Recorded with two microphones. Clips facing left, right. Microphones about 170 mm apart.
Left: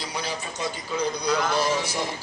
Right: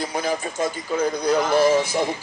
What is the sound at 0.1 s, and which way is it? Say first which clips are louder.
Speech: right 7 dB; 50° right (ahead or behind).